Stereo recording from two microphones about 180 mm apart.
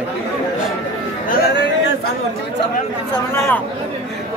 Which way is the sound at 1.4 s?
70° left (ahead or behind).